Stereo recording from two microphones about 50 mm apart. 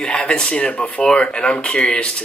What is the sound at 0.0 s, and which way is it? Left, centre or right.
Speech, left.